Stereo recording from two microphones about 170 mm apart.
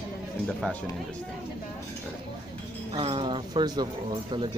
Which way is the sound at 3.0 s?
35° right (ahead or behind).